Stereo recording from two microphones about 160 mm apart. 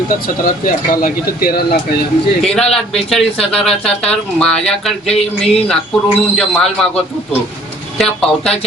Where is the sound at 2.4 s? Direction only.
5° left (ahead or behind).